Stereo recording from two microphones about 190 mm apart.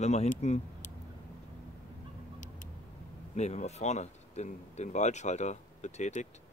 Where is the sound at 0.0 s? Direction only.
35° left (ahead or behind).